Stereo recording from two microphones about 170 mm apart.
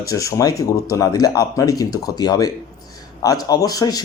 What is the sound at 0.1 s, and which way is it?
Speech, 20° left (ahead or behind).